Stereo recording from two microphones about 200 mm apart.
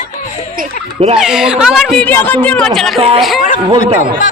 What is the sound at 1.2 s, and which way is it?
Speech, centre (ahead or behind).